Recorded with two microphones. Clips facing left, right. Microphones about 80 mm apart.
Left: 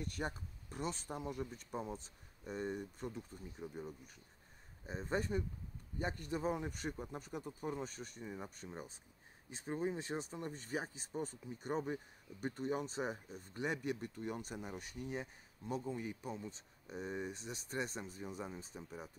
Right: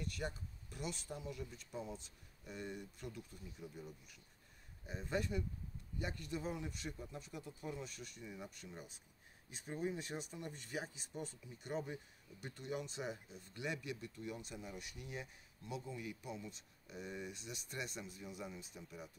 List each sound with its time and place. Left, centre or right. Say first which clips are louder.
0.0 s speech: left 2 dB; left